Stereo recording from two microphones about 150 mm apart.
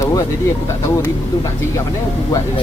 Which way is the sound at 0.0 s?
20° left (ahead or behind).